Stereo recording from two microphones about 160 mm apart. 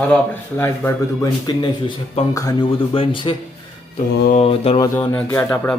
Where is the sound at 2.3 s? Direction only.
20° left (ahead or behind).